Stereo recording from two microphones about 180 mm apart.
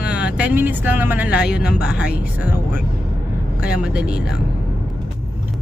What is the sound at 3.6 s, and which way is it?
Speech, 5° right (ahead or behind).